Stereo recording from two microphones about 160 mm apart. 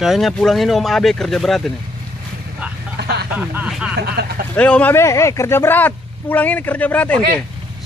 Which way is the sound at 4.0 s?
85° right.